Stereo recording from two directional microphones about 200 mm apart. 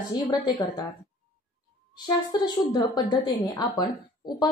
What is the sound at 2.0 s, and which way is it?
A woman's voice, 20° left (ahead or behind).